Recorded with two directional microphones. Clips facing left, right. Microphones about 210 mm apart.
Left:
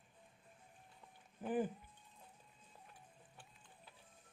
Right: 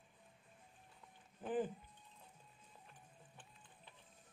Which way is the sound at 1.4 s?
10° left (ahead or behind).